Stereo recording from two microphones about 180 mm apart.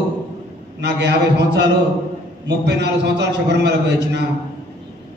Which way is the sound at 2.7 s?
70° right (ahead or behind).